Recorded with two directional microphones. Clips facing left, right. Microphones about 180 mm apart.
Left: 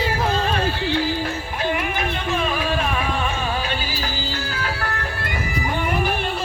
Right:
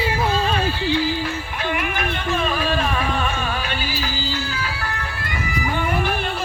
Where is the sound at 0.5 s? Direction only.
55° left (ahead or behind).